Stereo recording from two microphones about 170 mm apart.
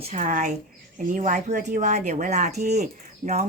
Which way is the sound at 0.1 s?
50° right (ahead or behind).